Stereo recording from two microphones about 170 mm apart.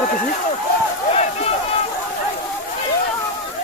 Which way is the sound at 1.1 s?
40° left (ahead or behind).